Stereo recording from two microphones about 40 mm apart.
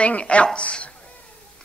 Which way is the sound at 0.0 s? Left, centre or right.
Left.